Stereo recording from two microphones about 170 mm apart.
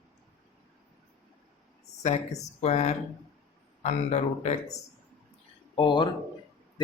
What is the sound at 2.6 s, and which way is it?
Speech, 40° left (ahead or behind).